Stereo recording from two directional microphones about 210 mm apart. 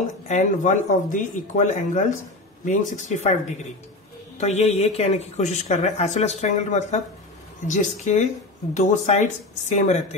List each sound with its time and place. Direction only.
0.0 s speech: 35° left (ahead or behind)
4.4 s speech: 30° left (ahead or behind)